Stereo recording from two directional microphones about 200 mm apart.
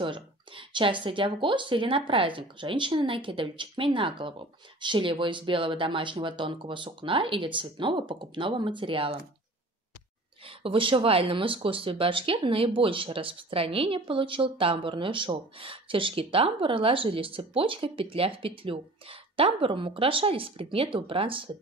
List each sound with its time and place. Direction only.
0.0 s speech: 25° right (ahead or behind)
10.6 s speech: 25° right (ahead or behind)